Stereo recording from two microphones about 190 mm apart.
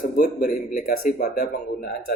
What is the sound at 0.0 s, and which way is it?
Speech, 45° left (ahead or behind).